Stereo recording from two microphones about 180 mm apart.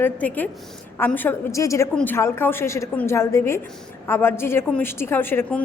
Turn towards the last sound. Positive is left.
turn(degrees=10)  # may be behind; listen again after turning